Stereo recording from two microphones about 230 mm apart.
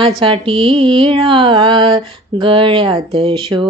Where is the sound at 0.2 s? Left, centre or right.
Right.